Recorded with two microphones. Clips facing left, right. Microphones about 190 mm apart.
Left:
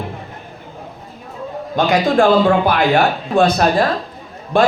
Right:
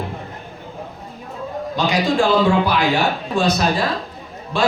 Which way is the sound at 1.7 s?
55° left (ahead or behind).